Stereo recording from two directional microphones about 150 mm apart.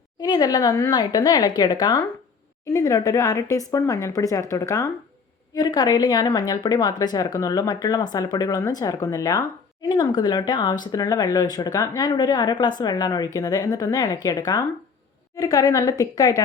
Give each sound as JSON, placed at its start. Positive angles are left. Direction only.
{"t": 0.2, "sound": "speech", "side_deg": 25}